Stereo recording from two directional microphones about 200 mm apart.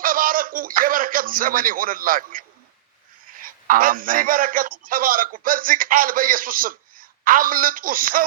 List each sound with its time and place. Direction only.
0.0 s a man's voice: 45° right (ahead or behind)